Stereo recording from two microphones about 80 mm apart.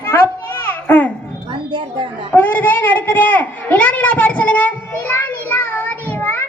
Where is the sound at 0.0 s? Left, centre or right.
Left.